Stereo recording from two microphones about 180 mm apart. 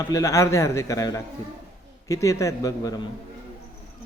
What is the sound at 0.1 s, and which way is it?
A man's voice, 20° left (ahead or behind).